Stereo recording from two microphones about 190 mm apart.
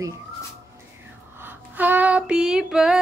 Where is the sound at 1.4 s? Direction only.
10° right (ahead or behind).